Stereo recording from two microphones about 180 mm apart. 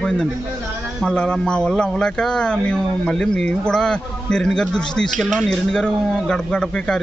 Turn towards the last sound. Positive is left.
turn(degrees=5)  # may be behind; listen again after turning